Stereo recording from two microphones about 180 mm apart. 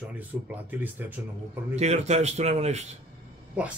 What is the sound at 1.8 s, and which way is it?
Speech, 40° right (ahead or behind).